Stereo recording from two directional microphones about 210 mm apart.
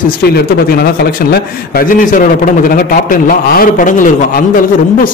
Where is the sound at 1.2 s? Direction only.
45° left (ahead or behind).